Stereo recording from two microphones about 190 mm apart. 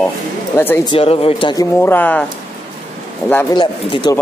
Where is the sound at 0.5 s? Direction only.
15° left (ahead or behind).